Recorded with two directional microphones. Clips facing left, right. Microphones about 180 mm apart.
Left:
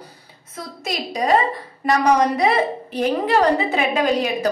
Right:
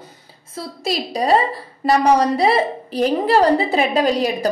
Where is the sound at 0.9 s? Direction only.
35° right (ahead or behind).